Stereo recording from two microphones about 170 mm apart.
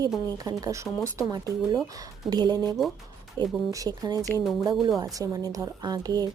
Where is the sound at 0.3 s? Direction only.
20° right (ahead or behind).